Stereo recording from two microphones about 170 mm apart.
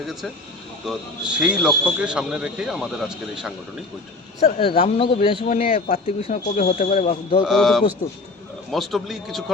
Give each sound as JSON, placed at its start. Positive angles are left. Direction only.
{"t": 0.9, "sound": "a man's voice", "side_deg": -5}
{"t": 4.4, "sound": "speech", "side_deg": 40}
{"t": 5.5, "sound": "speech", "side_deg": 50}
{"t": 7.4, "sound": "a man's voice", "side_deg": 0}